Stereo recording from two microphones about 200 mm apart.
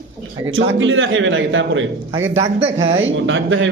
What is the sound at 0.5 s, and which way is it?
A man's voice, 75° right (ahead or behind).